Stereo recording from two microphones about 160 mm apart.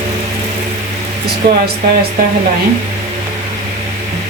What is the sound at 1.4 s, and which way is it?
Speech, 90° right.